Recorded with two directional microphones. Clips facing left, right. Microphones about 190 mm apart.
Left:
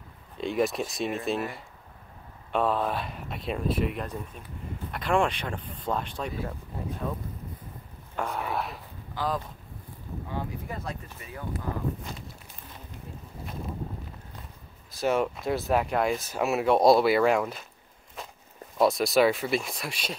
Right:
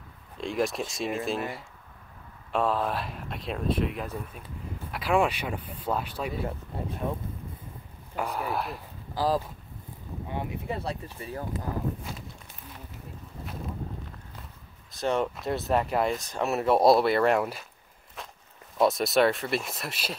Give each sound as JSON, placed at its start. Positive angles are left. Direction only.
{"t": 0.4, "sound": "speech", "side_deg": 0}
{"t": 7.0, "sound": "speech", "side_deg": -25}
{"t": 8.2, "sound": "speech", "side_deg": 0}
{"t": 9.1, "sound": "speech", "side_deg": -35}
{"t": 10.3, "sound": "speech", "side_deg": -20}
{"t": 10.8, "sound": "speech", "side_deg": -30}
{"t": 15.0, "sound": "speech", "side_deg": 0}
{"t": 18.8, "sound": "speech", "side_deg": 0}